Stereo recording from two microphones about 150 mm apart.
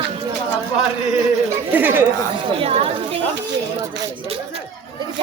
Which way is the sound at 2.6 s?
40° right (ahead or behind).